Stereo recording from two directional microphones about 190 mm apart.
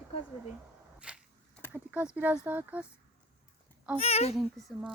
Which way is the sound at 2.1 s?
10° right (ahead or behind).